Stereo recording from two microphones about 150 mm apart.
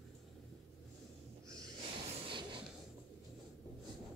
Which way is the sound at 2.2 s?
35° right (ahead or behind).